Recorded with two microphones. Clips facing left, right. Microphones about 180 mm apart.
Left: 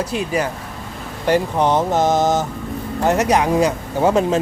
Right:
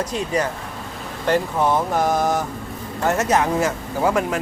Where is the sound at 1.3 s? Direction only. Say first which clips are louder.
Left 3 dB; 20° left (ahead or behind).